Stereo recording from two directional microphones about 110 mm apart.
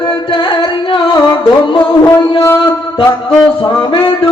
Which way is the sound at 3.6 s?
45° left (ahead or behind).